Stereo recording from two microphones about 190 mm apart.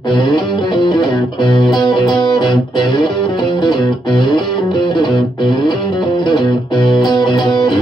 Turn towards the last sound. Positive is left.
turn(degrees=25)  # may be behind; listen again after turning